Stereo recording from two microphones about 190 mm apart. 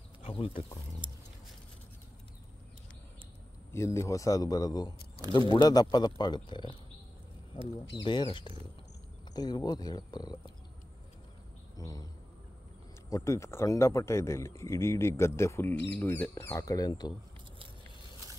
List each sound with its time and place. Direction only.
0.2 s speech: 30° left (ahead or behind)
1.0 s a sound: 25° right (ahead or behind)
3.7 s speech: 15° left (ahead or behind)
7.9 s speech: 25° left (ahead or behind)
11.7 s a sound: 20° left (ahead or behind)
13.1 s speech: 15° left (ahead or behind)